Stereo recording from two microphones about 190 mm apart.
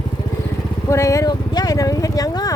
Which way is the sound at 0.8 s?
15° left (ahead or behind).